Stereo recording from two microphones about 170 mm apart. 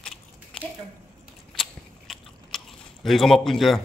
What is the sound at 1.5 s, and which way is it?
Chewing, centre (ahead or behind).